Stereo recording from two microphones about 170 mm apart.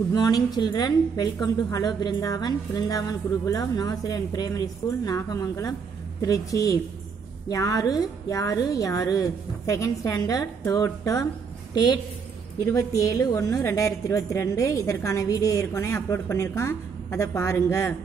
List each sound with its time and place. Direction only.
0.1 s a woman's voice: 25° left (ahead or behind)
12.6 s a woman's voice: 20° left (ahead or behind)